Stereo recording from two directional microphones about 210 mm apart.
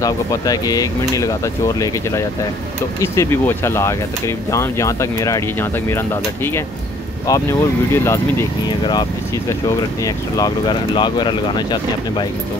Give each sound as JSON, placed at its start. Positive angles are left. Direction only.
{"t": 0.0, "sound": "speech", "side_deg": 15}